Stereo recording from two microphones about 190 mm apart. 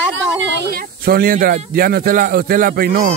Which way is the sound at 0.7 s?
50° right (ahead or behind).